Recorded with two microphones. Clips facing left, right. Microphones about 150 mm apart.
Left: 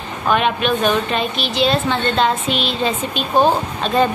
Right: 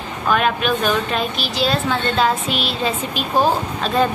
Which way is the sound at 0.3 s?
Centre (ahead or behind).